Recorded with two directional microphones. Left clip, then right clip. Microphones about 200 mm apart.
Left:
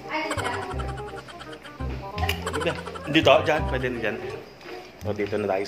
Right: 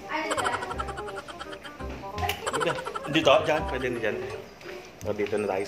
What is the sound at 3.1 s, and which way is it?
Speech, 20° left (ahead or behind).